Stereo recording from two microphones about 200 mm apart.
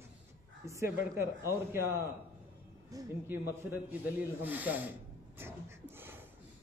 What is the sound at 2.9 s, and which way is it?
A man's voice, 10° right (ahead or behind).